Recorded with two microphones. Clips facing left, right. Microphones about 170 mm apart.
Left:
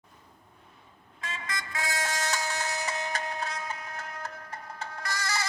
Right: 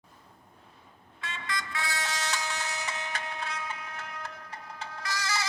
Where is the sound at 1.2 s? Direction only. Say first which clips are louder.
Right 1 dB; 45° left (ahead or behind).